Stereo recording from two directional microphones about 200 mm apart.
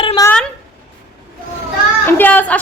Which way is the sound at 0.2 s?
20° left (ahead or behind).